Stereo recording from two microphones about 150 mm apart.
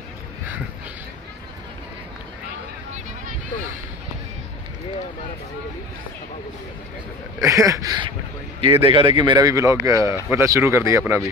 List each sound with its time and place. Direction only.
7.4 s speech: 20° right (ahead or behind)
8.5 s speech: 35° right (ahead or behind); by 11.2 s 20° right (ahead or behind)